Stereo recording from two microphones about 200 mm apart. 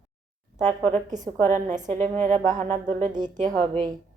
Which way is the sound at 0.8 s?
30° right (ahead or behind).